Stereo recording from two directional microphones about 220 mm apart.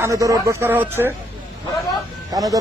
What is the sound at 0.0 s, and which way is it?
Speech, 15° right (ahead or behind).